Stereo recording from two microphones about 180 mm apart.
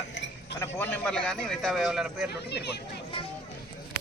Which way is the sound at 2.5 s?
65° left (ahead or behind).